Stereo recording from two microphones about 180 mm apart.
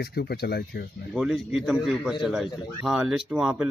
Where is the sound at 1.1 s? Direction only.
5° right (ahead or behind).